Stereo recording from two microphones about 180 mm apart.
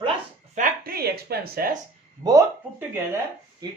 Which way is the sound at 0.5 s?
50° right (ahead or behind).